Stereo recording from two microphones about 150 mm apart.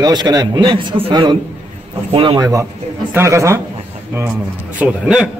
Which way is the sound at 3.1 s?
20° right (ahead or behind).